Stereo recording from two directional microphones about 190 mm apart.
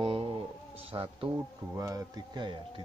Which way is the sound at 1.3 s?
20° right (ahead or behind).